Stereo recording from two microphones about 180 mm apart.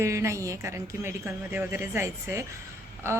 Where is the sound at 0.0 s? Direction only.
15° right (ahead or behind).